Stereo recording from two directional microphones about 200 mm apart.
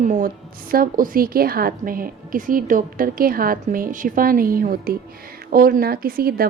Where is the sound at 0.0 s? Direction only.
40° right (ahead or behind).